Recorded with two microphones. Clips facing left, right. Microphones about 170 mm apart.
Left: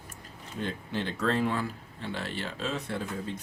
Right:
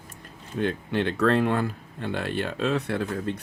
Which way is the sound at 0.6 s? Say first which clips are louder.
Right 7 dB; 65° right (ahead or behind).